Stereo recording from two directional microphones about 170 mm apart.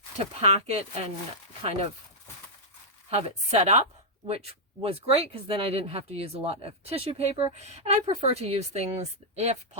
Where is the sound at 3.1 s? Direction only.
40° right (ahead or behind).